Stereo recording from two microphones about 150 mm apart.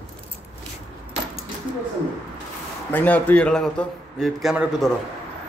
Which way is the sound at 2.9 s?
10° left (ahead or behind).